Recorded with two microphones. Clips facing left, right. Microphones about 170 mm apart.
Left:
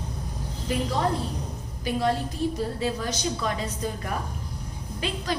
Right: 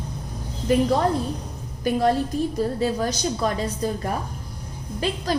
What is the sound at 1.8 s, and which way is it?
A woman's voice, 45° right (ahead or behind).